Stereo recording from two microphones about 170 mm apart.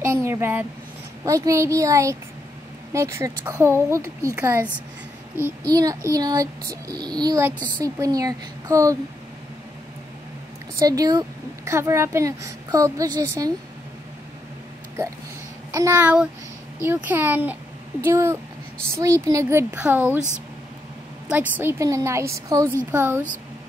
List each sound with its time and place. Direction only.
0.0 s a sound: 15° right (ahead or behind)
1.2 s speech: 20° right (ahead or behind)
5.7 s speech: 20° right (ahead or behind)
10.8 s speech: 20° right (ahead or behind)
15.7 s speech: 15° right (ahead or behind)
21.3 s speech: 10° right (ahead or behind)